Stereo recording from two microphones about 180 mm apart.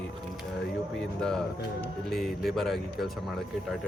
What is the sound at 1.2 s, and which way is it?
Speech, 5° left (ahead or behind).